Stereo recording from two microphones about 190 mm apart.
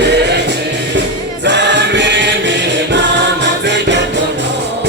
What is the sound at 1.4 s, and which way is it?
Choir, 65° right (ahead or behind).